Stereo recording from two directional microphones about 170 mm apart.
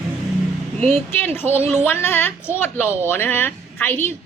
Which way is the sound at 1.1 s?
15° left (ahead or behind).